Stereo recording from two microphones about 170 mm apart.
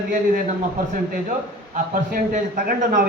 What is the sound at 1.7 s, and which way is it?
A man's voice, 55° right (ahead or behind).